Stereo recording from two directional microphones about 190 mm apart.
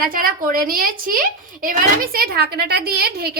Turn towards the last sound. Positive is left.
turn(degrees=-55)  # may be behind; listen again after turning